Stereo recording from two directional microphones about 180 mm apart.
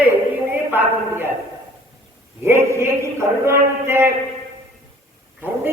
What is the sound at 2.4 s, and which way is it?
A man's voice, 15° right (ahead or behind).